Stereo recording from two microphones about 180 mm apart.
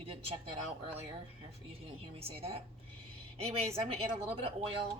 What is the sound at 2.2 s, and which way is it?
Speech, 30° right (ahead or behind).